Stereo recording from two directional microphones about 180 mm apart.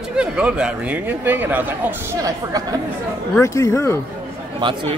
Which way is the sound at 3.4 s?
15° left (ahead or behind).